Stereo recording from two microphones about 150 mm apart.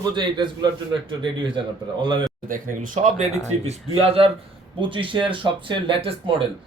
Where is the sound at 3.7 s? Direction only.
40° right (ahead or behind).